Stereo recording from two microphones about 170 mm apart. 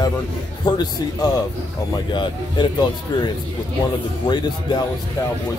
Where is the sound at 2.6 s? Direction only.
25° left (ahead or behind).